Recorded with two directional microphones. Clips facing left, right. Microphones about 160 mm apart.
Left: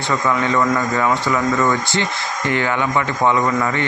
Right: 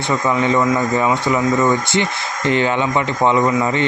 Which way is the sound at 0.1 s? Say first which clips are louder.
Right 2 dB; 20° right (ahead or behind).